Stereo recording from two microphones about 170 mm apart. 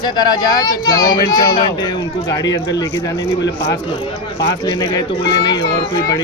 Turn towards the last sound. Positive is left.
turn(degrees=25)  # may be behind; listen again after turning